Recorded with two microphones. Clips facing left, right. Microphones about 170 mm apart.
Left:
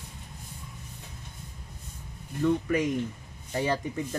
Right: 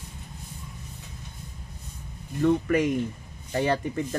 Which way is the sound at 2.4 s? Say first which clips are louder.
Right 3 dB; 65° right (ahead or behind).